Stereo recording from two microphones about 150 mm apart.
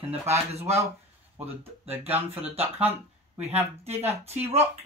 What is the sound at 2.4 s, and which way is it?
Speech, 40° right (ahead or behind).